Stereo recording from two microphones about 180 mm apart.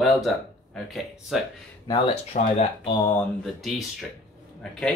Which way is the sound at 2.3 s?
50° left (ahead or behind).